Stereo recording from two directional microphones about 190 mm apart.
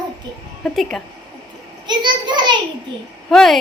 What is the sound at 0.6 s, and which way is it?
Speech, centre (ahead or behind).